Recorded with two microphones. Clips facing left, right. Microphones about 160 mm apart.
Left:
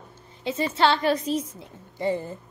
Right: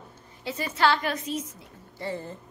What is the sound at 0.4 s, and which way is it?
A woman's voice, 25° left (ahead or behind).